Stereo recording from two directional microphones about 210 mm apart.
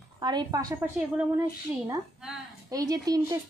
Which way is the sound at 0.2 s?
20° right (ahead or behind).